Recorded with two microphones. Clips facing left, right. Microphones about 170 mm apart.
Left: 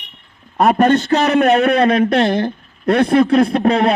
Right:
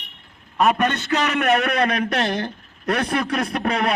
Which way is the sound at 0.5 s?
35° left (ahead or behind).